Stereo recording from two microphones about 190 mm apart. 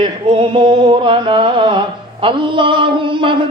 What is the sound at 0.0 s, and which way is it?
Mantra, 25° right (ahead or behind).